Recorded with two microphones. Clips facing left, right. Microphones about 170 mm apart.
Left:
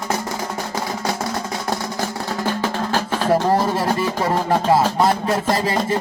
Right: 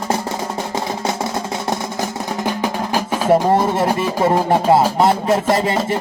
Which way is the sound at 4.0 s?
15° right (ahead or behind).